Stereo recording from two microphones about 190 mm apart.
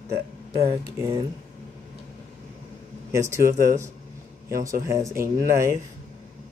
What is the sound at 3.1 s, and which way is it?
Speech, 15° right (ahead or behind).